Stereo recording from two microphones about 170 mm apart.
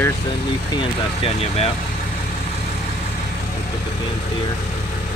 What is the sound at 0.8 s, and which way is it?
Speech, 35° left (ahead or behind).